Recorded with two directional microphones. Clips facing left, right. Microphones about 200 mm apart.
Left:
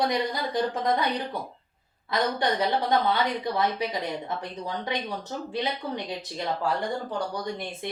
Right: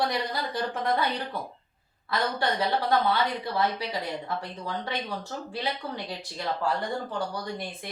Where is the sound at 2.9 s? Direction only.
20° left (ahead or behind).